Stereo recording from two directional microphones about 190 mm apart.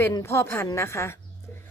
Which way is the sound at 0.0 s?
15° left (ahead or behind).